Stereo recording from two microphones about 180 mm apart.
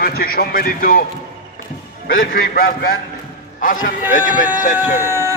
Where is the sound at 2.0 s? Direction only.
55° left (ahead or behind).